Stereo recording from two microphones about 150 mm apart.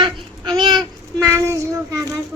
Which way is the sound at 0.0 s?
30° right (ahead or behind).